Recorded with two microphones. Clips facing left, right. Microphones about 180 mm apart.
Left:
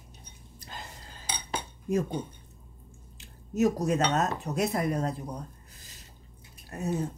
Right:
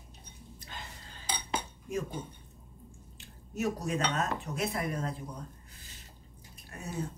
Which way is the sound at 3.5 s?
40° left (ahead or behind).